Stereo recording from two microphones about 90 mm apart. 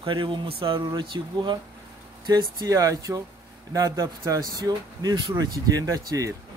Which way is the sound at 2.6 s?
35° right (ahead or behind).